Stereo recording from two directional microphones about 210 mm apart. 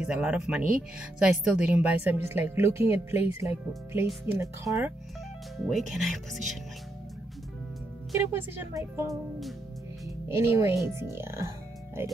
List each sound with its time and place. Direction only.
0.0 s speech: 5° right (ahead or behind)
5.6 s speech: centre (ahead or behind)
8.1 s speech: 15° right (ahead or behind)
10.3 s speech: 10° right (ahead or behind)